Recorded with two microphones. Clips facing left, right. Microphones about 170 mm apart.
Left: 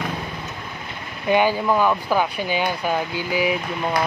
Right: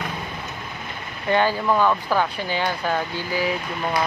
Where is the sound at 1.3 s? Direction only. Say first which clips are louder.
Left 2 dB; 10° left (ahead or behind).